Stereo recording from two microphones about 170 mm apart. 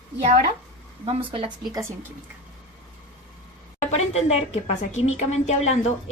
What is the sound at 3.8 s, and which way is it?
A woman's voice, 40° left (ahead or behind).